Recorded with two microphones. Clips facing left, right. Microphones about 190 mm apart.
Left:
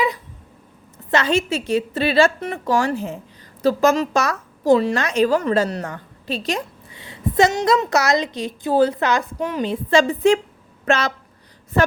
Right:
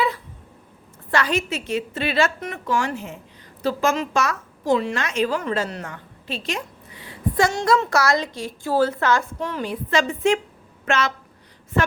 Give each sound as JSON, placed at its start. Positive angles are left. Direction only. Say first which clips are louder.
{"t": 1.1, "sound": "a woman's voice", "louder": "left 4 dB", "side_deg": 25}
{"t": 7.0, "sound": "a woman's voice", "louder": "left 4 dB", "side_deg": 25}